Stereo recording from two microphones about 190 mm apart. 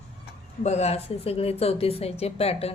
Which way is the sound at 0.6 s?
35° left (ahead or behind).